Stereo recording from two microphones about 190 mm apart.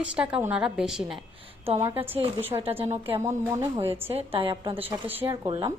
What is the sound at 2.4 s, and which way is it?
Speech, 10° right (ahead or behind).